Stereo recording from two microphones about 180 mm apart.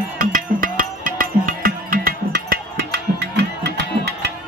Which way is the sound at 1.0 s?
50° right (ahead or behind).